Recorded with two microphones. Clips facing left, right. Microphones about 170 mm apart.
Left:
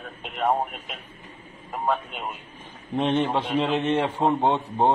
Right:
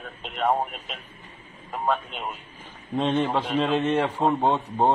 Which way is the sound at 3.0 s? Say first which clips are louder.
Even; 20° left (ahead or behind).